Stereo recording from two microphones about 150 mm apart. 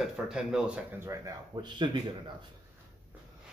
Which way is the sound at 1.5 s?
30° right (ahead or behind).